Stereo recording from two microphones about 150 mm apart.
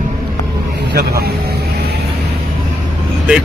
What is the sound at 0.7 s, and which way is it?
Vehicle, 90° right.